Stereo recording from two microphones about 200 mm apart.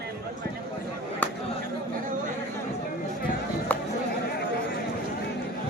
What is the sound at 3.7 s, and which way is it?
Chatter, 10° left (ahead or behind).